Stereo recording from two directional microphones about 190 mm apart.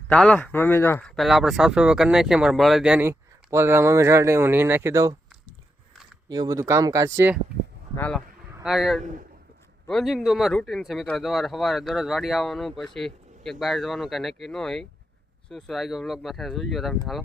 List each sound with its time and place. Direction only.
0.1 s speech: 5° left (ahead or behind); by 5.1 s 15° right (ahead or behind)
6.2 s speech: 20° right (ahead or behind)
7.9 s speech: 10° left (ahead or behind)
9.0 s a man's voice: 40° right (ahead or behind)
9.8 s speech: centre (ahead or behind)